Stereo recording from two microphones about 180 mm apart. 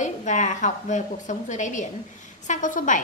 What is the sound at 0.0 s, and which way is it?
A woman's voice, 45° left (ahead or behind).